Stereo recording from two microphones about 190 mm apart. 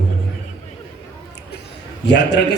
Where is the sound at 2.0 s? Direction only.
65° left (ahead or behind).